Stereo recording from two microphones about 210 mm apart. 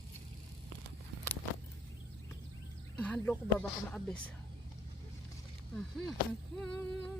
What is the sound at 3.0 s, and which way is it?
Speech, 5° left (ahead or behind).